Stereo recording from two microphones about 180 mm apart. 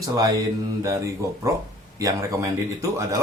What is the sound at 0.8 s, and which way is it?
Speech, 15° right (ahead or behind).